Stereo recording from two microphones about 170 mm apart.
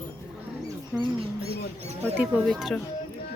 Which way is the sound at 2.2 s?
Centre (ahead or behind).